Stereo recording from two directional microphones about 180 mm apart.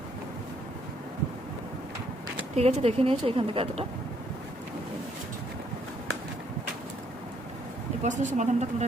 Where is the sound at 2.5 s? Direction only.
35° right (ahead or behind).